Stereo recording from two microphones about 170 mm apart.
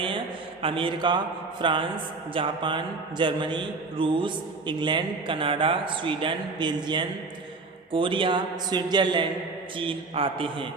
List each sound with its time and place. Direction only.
0.6 s a man's voice: 30° right (ahead or behind)